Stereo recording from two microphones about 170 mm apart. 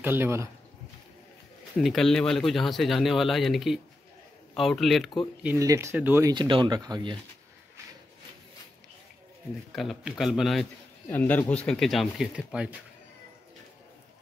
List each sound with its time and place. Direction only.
0.0 s speech: 10° right (ahead or behind)
1.8 s speech: centre (ahead or behind)
5.4 s speech: 15° right (ahead or behind)
6.3 s speech: 30° right (ahead or behind)
9.7 s speech: centre (ahead or behind)